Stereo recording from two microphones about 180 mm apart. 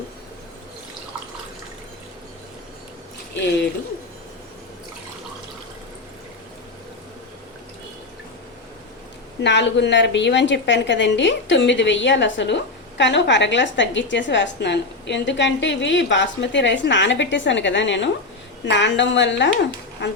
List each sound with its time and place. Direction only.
9.4 s a woman's voice: 75° left (ahead or behind)